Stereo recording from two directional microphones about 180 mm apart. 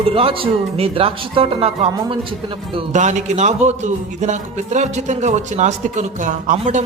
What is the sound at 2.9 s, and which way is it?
A man's voice, 40° right (ahead or behind).